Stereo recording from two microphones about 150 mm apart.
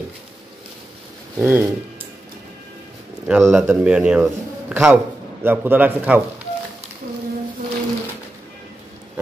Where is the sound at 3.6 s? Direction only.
5° right (ahead or behind).